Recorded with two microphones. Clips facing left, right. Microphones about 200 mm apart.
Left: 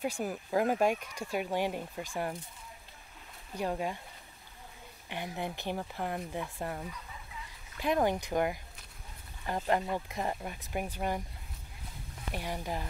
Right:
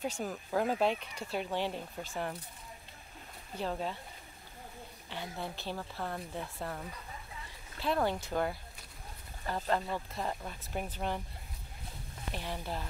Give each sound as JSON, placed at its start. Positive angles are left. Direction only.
{"t": 0.0, "sound": "speech", "side_deg": 10}
{"t": 3.5, "sound": "speech", "side_deg": 10}
{"t": 5.1, "sound": "speech", "side_deg": 15}
{"t": 7.8, "sound": "speech", "side_deg": 15}
{"t": 12.4, "sound": "speech", "side_deg": 15}